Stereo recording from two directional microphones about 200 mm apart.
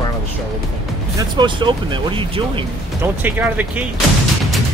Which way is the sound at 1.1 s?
20° right (ahead or behind).